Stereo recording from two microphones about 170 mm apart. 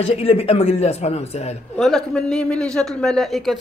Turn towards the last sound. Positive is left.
turn(degrees=0)  # may be behind; listen again after turning